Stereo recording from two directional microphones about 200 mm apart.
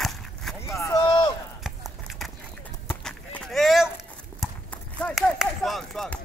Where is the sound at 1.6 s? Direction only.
Centre (ahead or behind).